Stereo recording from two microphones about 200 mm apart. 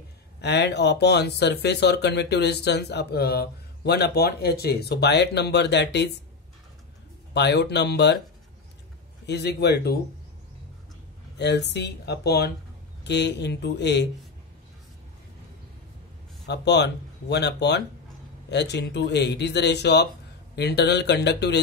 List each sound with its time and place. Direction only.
0.4 s speech: 55° left (ahead or behind)
7.3 s speech: 60° left (ahead or behind)
9.2 s speech: 55° left (ahead or behind)
11.3 s speech: 60° left (ahead or behind)
16.4 s speech: 60° left (ahead or behind)